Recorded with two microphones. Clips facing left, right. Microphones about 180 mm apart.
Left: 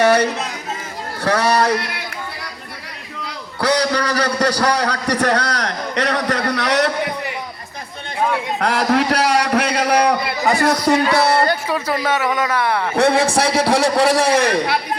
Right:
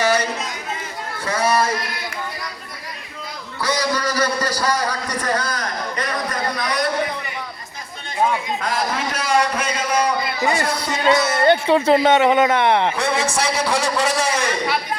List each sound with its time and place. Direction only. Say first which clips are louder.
0.0 s speech: left 5 dB; 60° left (ahead or behind)
3.2 s a sound: left 5 dB; 70° left (ahead or behind)
8.5 s a sound: left 6 dB; 70° left (ahead or behind)
11.1 s speech: left 3 dB; 65° left (ahead or behind)
11.4 s speech: right 6 dB; 25° right (ahead or behind)
13.0 s a man's voice: left 6 dB; 60° left (ahead or behind)